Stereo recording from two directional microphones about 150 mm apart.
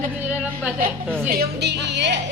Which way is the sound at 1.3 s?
90° right.